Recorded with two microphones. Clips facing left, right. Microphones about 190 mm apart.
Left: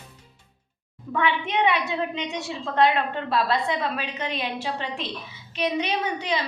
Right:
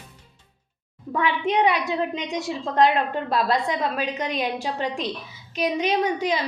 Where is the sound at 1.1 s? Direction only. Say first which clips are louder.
Right 2 dB; 40° right (ahead or behind).